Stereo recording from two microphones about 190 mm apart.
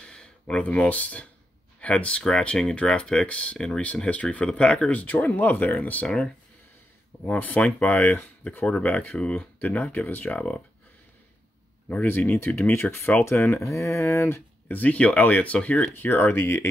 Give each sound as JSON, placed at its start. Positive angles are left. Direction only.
{"t": 0.0, "sound": "speech", "side_deg": 5}
{"t": 11.9, "sound": "speech", "side_deg": 5}